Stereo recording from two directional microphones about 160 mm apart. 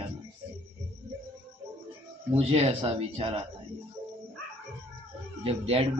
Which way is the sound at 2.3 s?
40° right (ahead or behind).